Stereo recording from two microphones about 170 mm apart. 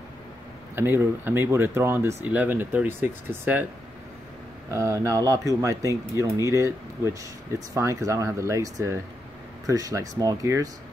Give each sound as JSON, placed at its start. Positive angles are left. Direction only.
{"t": 0.7, "sound": "speech", "side_deg": -15}
{"t": 4.6, "sound": "speech", "side_deg": -15}